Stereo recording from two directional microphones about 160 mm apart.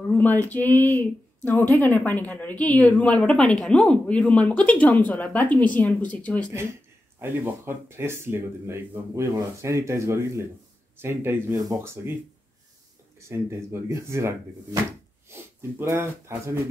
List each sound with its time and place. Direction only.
0.1 s a woman's voice: 10° left (ahead or behind)
7.2 s speech: 15° right (ahead or behind)
13.2 s speech: 15° right (ahead or behind)